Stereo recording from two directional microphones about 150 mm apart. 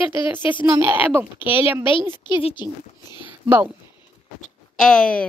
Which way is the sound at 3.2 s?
15° right (ahead or behind).